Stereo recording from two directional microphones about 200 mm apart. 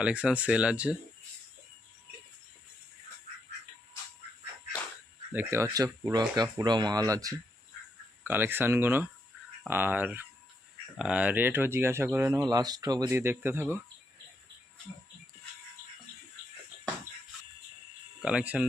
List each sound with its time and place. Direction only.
0.0 s speech: 5° right (ahead or behind)
5.3 s speech: 10° right (ahead or behind)
18.2 s speech: 5° right (ahead or behind)